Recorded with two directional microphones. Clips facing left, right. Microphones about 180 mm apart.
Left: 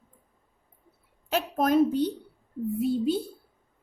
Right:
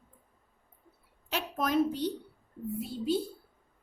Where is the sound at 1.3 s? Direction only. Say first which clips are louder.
Left 7 dB; 50° left (ahead or behind).